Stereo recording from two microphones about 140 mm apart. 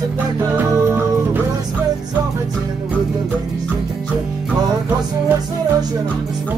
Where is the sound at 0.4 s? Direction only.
20° right (ahead or behind).